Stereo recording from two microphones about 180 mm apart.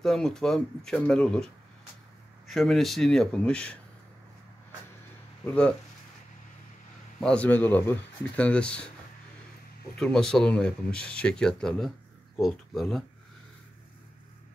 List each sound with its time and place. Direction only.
0.0 s speech: 5° left (ahead or behind)
5.4 s speech: 5° left (ahead or behind)
7.2 s speech: 5° left (ahead or behind)
9.9 s speech: 5° left (ahead or behind)